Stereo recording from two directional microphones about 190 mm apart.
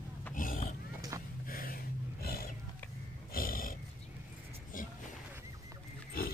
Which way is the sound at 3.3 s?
50° left (ahead or behind).